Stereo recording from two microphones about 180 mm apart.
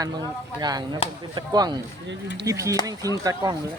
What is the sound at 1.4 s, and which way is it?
Speech, 25° right (ahead or behind).